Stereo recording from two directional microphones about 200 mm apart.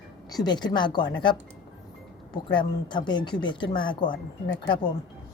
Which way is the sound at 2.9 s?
20° left (ahead or behind).